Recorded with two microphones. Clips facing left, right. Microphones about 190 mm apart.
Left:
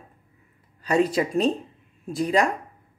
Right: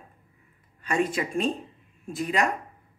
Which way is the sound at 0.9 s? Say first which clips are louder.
Left 5 dB; 35° left (ahead or behind).